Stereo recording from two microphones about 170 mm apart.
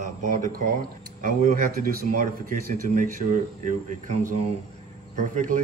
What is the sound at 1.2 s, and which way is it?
A man's voice, 60° right (ahead or behind).